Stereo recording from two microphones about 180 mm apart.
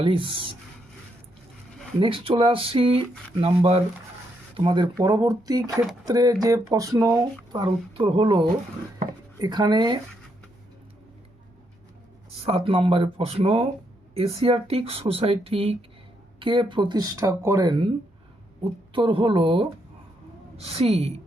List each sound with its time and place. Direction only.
0.0 s speech: 30° right (ahead or behind)
2.0 s speech: 30° right (ahead or behind)
12.5 s speech: 30° right (ahead or behind)
18.9 s speech: 25° right (ahead or behind)